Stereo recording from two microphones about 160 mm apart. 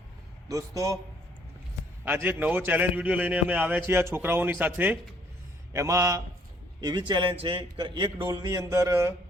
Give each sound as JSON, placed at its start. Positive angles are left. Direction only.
{"t": 0.4, "sound": "a man's voice", "side_deg": -20}
{"t": 2.0, "sound": "a man's voice", "side_deg": -10}